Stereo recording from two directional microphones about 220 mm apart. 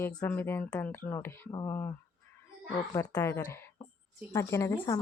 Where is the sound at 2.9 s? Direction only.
15° left (ahead or behind).